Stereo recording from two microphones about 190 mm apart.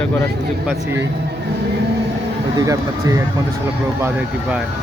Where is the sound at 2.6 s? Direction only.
20° right (ahead or behind).